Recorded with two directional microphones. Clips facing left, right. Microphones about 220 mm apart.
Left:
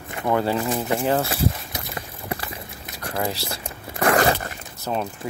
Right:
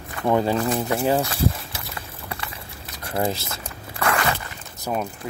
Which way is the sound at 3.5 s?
30° left (ahead or behind).